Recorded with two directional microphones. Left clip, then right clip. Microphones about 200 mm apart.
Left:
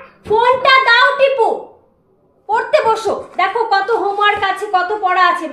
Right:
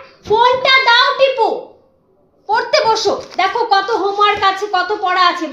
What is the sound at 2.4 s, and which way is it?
A child's voice, 30° right (ahead or behind).